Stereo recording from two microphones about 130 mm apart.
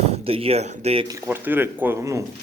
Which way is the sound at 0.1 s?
45° right (ahead or behind).